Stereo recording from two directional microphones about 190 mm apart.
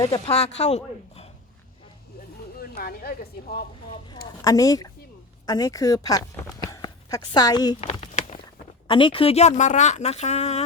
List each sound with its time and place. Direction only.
0.3 s a woman's voice: 35° left (ahead or behind)
2.6 s speech: 50° left (ahead or behind)
4.4 s a woman's voice: 20° left (ahead or behind)
7.8 s a sound: 30° left (ahead or behind)
8.9 s a woman's voice: 25° left (ahead or behind)